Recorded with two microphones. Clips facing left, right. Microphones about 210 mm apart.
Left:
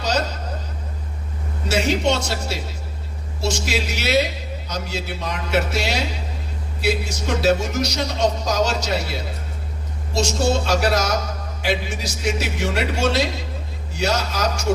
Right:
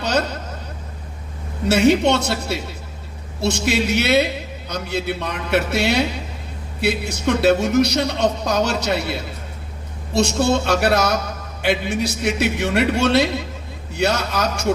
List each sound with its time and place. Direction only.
1.6 s speech: 60° right (ahead or behind)